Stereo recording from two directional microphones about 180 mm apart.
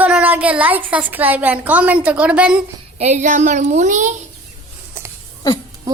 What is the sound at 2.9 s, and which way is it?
A child's voice, 40° right (ahead or behind).